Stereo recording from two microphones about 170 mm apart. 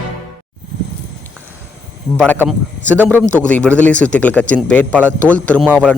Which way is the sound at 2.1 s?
10° left (ahead or behind).